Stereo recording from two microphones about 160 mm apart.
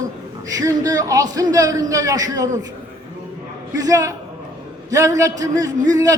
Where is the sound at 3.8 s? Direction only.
20° right (ahead or behind).